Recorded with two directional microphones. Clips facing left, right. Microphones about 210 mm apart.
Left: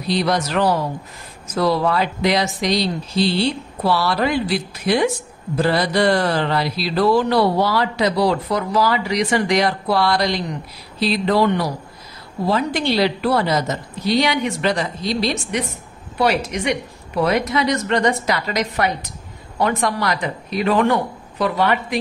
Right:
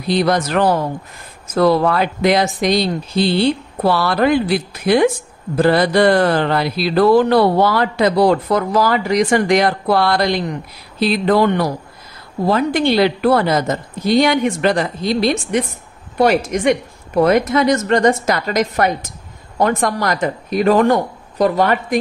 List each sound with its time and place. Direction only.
0.1 s speech: 55° right (ahead or behind)